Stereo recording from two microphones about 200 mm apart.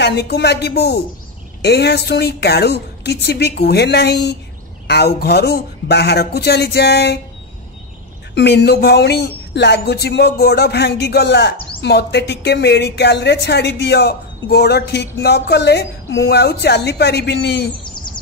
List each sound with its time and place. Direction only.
0.0 s a woman's voice: 55° left (ahead or behind)
8.4 s a woman's voice: 60° left (ahead or behind)
17.9 s bird: 25° left (ahead or behind)